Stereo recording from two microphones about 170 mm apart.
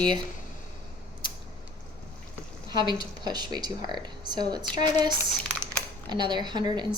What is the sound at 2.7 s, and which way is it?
Speech, 25° right (ahead or behind).